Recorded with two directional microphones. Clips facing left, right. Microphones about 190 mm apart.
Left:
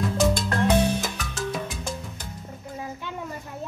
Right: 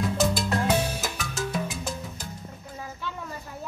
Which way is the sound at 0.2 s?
5° right (ahead or behind).